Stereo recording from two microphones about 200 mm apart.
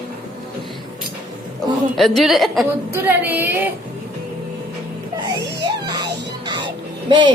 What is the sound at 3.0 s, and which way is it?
Child singing, 10° right (ahead or behind).